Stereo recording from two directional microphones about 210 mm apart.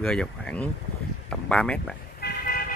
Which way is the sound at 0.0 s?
5° left (ahead or behind).